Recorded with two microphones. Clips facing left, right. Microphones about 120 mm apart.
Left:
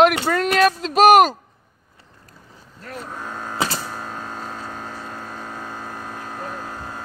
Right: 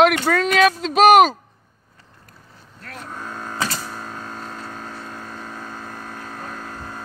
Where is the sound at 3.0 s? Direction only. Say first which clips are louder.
Left 1 dB; 5° left (ahead or behind).